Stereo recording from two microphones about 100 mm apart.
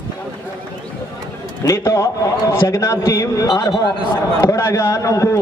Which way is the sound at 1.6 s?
30° left (ahead or behind).